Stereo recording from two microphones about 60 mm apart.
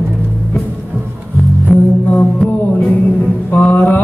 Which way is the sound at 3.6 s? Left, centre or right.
Left.